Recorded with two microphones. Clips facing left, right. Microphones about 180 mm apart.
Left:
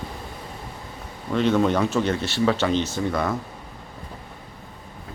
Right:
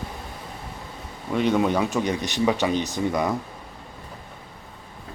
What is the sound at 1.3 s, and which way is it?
Speech, 10° right (ahead or behind).